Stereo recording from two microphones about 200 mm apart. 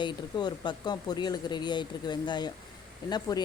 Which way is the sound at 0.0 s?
20° left (ahead or behind).